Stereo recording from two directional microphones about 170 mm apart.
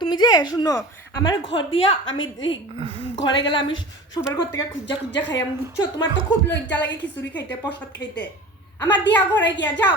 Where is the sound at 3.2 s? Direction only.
30° left (ahead or behind).